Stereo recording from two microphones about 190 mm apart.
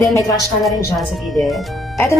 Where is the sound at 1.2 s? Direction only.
Centre (ahead or behind).